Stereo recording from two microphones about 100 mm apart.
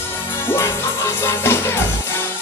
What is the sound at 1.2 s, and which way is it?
Music, 25° left (ahead or behind).